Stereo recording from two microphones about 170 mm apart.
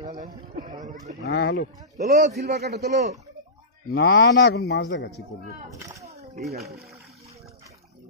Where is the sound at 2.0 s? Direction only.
45° right (ahead or behind).